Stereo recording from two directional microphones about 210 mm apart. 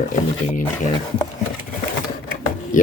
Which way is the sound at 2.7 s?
40° left (ahead or behind).